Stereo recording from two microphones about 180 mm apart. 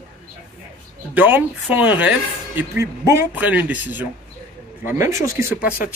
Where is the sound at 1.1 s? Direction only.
10° right (ahead or behind).